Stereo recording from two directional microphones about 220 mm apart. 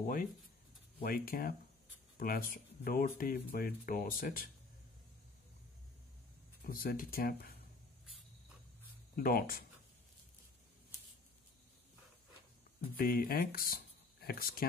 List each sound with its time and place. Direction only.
0.0 s speech: 40° left (ahead or behind)
6.6 s speech: 40° left (ahead or behind)
9.1 s speech: 40° left (ahead or behind)
12.9 s speech: 40° left (ahead or behind)